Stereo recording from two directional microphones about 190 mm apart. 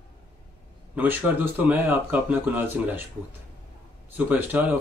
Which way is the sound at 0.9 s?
10° right (ahead or behind).